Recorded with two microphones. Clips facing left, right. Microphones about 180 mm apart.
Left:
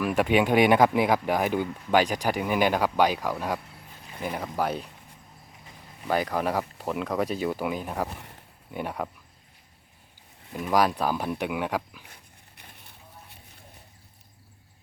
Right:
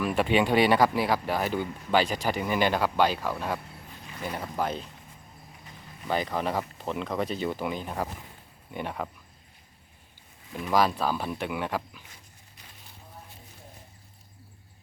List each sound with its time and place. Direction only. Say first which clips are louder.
0.0 s speech: left 2 dB; 10° left (ahead or behind)
6.1 s speech: left 2 dB; 5° left (ahead or behind)
10.7 s speech: left 1 dB; 10° left (ahead or behind)
12.0 s dog: left 1 dB; 60° left (ahead or behind)